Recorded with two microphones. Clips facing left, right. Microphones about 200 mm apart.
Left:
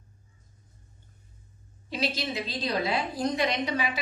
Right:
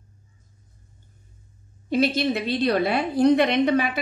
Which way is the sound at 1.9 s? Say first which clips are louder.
Right 10 dB; 55° right (ahead or behind).